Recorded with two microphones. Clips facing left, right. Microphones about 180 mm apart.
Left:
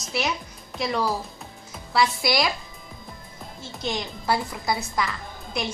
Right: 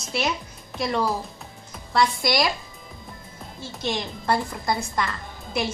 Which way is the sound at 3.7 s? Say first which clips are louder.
Right 1 dB; centre (ahead or behind).